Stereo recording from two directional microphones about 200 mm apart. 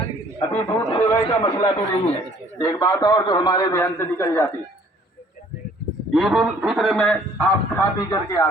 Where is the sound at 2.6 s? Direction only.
15° left (ahead or behind).